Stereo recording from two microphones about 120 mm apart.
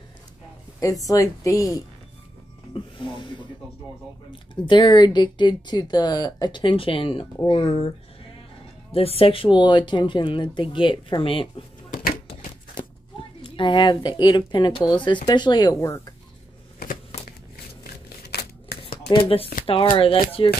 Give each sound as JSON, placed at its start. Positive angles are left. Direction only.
{"t": 0.7, "sound": "speech", "side_deg": 30}
{"t": 2.7, "sound": "music", "side_deg": 45}
{"t": 4.3, "sound": "speech", "side_deg": 40}
{"t": 8.9, "sound": "speech", "side_deg": 55}
{"t": 13.4, "sound": "speech", "side_deg": 45}
{"t": 19.1, "sound": "speech", "side_deg": 50}